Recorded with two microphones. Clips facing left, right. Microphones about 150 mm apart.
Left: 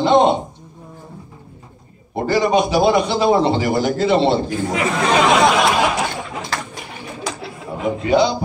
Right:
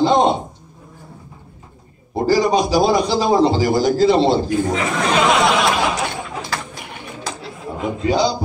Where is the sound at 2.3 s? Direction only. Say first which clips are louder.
Even; 35° right (ahead or behind).